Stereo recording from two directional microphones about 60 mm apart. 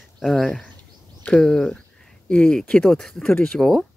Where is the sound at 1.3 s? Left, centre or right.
Centre.